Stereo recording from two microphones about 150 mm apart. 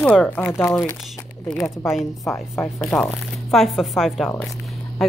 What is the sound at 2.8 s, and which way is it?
A woman's voice, centre (ahead or behind).